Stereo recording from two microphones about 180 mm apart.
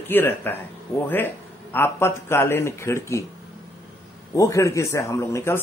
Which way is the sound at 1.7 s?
15° left (ahead or behind).